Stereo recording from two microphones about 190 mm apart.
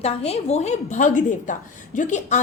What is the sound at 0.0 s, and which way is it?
A woman's voice, 35° left (ahead or behind).